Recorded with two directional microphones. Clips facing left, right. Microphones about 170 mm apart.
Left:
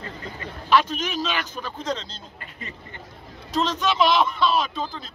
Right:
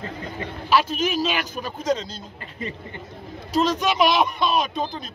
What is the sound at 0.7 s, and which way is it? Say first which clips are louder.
A man's voice: even; 5° right (ahead or behind).